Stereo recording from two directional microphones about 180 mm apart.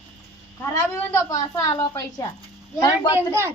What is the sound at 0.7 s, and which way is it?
A woman's voice, 15° left (ahead or behind).